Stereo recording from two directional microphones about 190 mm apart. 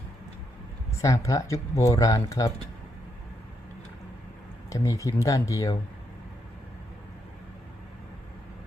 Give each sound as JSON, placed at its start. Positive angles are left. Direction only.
{"t": 1.0, "sound": "speech", "side_deg": 15}
{"t": 4.7, "sound": "speech", "side_deg": 15}